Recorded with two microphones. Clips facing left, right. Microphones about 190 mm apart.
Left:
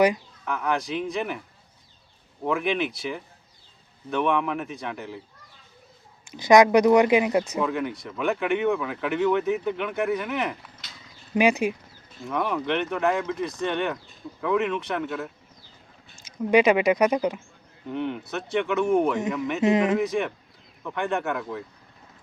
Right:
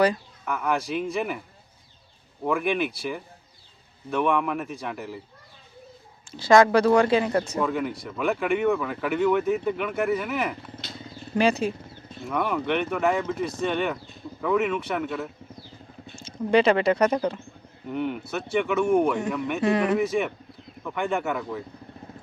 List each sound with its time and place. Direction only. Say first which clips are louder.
0.4 s speech: even; centre (ahead or behind)
2.4 s speech: right 1 dB; centre (ahead or behind)
6.3 s speech: left 1 dB; 15° left (ahead or behind)
7.5 s speech: even; centre (ahead or behind)
10.8 s wild animals: right 10 dB; 30° right (ahead or behind)
11.3 s speech: left 1 dB; 15° left (ahead or behind)
12.3 s speech: right 1 dB; 5° right (ahead or behind)
16.2 s speech: left 1 dB; 10° left (ahead or behind)
17.9 s speech: right 1 dB; 10° right (ahead or behind)
19.6 s speech: left 2 dB; 20° left (ahead or behind)
20.8 s speech: even; centre (ahead or behind)